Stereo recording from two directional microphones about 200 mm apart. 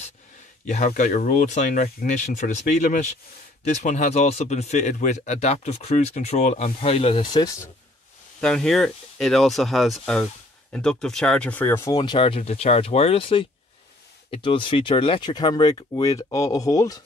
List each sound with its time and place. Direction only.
0.7 s speech: 40° left (ahead or behind); by 7.6 s 20° left (ahead or behind)
8.4 s speech: 5° left (ahead or behind)